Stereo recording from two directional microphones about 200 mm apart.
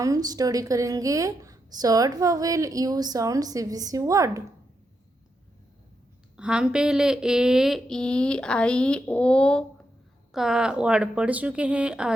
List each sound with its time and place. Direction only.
0.0 s a woman's voice: 20° right (ahead or behind)
6.3 s speech: 5° right (ahead or behind)